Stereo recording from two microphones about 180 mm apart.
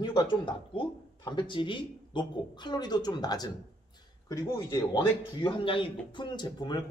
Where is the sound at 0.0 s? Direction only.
25° left (ahead or behind).